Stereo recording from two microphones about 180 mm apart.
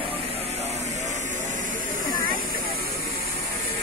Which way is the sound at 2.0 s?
50° right (ahead or behind).